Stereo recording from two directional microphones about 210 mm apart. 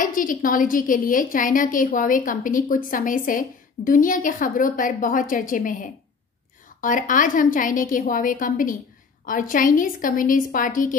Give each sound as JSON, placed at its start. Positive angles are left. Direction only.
{"t": 0.0, "sound": "a woman's voice", "side_deg": 40}